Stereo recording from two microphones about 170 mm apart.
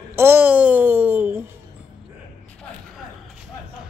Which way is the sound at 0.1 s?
15° right (ahead or behind).